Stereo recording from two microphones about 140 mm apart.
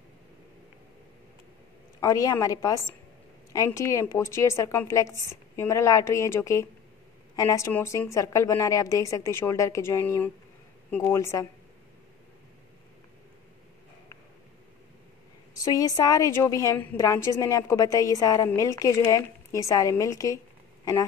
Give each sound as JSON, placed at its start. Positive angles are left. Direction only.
{"t": 2.0, "sound": "a woman's voice", "side_deg": 25}
{"t": 15.5, "sound": "a woman's voice", "side_deg": 25}